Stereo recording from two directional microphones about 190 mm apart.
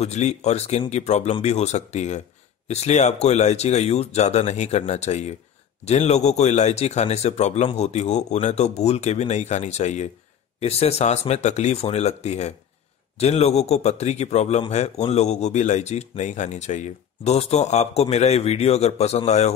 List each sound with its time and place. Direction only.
0.0 s speech: 35° left (ahead or behind)